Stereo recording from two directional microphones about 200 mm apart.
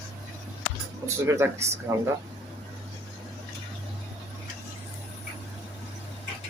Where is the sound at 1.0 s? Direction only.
15° right (ahead or behind).